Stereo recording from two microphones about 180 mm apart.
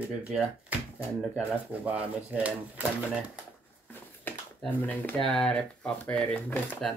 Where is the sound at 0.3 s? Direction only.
5° right (ahead or behind).